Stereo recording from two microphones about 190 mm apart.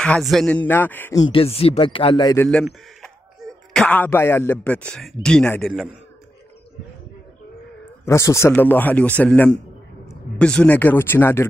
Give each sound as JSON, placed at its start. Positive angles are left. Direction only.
{"t": 0.0, "sound": "a man's voice", "side_deg": 0}
{"t": 1.2, "sound": "speech", "side_deg": 30}
{"t": 2.3, "sound": "a man's voice", "side_deg": 10}
{"t": 8.0, "sound": "a man's voice", "side_deg": 15}